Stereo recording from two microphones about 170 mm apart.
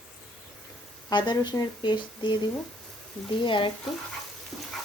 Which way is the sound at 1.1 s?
25° left (ahead or behind).